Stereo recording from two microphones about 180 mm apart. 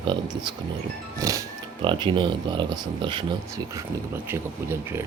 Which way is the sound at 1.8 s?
25° right (ahead or behind).